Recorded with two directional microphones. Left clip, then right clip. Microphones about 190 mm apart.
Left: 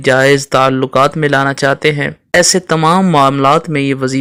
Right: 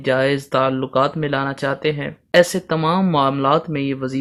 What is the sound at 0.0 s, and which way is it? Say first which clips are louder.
Speech: left 9 dB; 40° left (ahead or behind).